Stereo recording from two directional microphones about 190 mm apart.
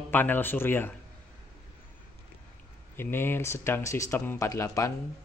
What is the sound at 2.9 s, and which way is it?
A man's voice, 10° left (ahead or behind).